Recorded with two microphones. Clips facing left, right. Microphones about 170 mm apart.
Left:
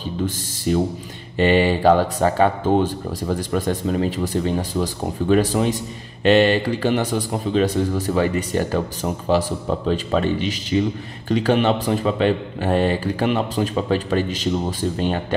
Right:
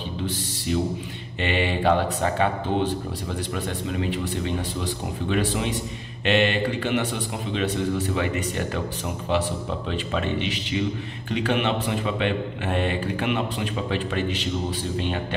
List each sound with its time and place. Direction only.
0.7 s speech: 45° left (ahead or behind)